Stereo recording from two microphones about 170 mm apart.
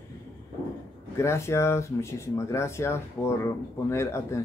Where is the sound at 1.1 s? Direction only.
15° left (ahead or behind).